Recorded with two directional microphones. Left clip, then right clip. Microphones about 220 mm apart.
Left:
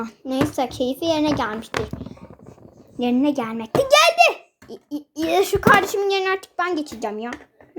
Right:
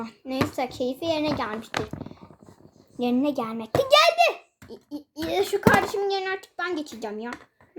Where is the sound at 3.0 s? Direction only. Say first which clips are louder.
Left 4 dB; 10° left (ahead or behind).